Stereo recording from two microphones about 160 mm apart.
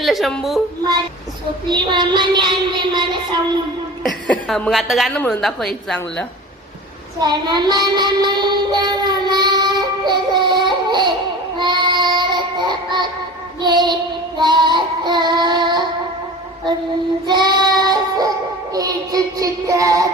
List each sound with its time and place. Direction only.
0.0 s a woman's voice: centre (ahead or behind)
1.7 s child singing: 30° right (ahead or behind)
4.0 s a woman's voice: centre (ahead or behind)
7.2 s child singing: 25° right (ahead or behind)
17.2 s child singing: 25° right (ahead or behind)